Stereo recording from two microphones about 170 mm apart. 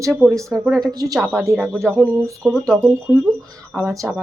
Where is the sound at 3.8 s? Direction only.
15° right (ahead or behind).